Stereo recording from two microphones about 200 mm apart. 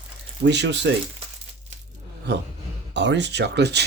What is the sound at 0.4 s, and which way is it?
Speech, 60° right (ahead or behind).